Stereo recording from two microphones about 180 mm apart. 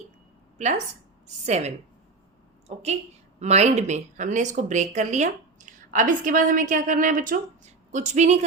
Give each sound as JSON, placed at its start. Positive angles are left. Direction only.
{"t": 1.5, "sound": "a woman's voice", "side_deg": -40}